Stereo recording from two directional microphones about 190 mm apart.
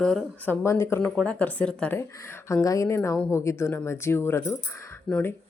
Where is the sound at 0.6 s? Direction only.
15° left (ahead or behind).